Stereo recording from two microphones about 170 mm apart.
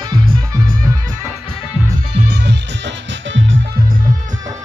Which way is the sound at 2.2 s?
75° right (ahead or behind).